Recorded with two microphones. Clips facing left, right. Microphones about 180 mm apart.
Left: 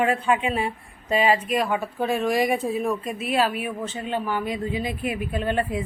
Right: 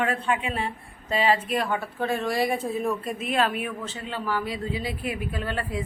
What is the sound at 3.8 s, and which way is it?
A woman's voice, 20° left (ahead or behind).